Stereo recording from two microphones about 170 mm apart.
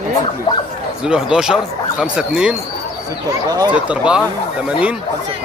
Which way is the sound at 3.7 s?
5° right (ahead or behind).